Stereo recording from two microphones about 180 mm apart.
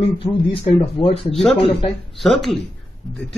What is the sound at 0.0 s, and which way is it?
Speech, 30° left (ahead or behind).